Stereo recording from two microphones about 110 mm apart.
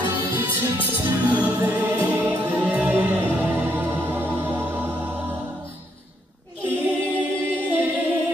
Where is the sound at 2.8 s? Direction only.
15° right (ahead or behind).